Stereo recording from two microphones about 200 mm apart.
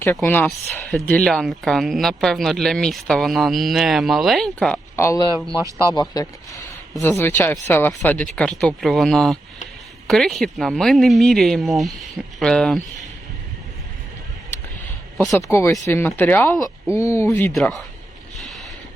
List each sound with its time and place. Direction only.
0.0 s speech: 10° left (ahead or behind)
4.9 s speech: 15° left (ahead or behind)
15.4 s speech: 15° left (ahead or behind)